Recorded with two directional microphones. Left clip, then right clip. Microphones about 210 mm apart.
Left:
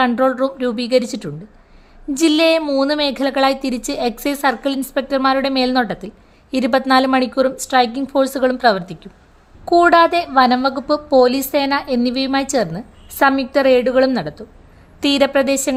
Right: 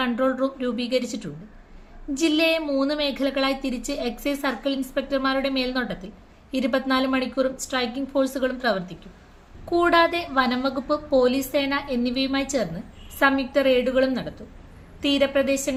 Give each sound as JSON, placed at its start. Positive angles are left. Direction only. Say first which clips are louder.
{"t": 0.0, "sound": "a woman's voice", "louder": "left 8 dB", "side_deg": 45}